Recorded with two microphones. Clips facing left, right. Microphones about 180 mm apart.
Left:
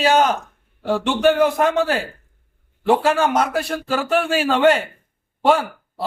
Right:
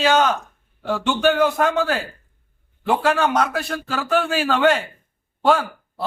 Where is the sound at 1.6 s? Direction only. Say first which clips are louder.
Left 2 dB; 25° left (ahead or behind).